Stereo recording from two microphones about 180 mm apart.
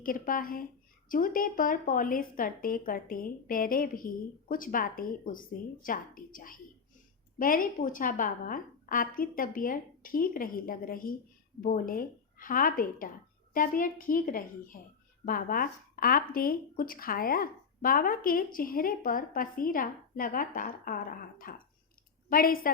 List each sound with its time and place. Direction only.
0.0 s a woman's voice: 50° left (ahead or behind)